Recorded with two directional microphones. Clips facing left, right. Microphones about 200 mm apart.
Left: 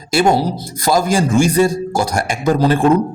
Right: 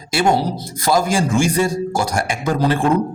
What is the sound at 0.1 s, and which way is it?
A man's voice, 40° left (ahead or behind).